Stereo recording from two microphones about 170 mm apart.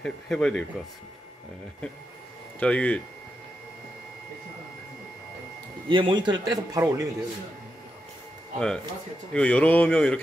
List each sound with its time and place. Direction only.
0.0 s speech: 5° left (ahead or behind)
2.6 s speech: 5° left (ahead or behind)
5.9 s a man's voice: 30° right (ahead or behind)
8.5 s speech: 5° left (ahead or behind)